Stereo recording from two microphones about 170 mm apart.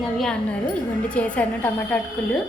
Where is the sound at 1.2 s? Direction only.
10° left (ahead or behind).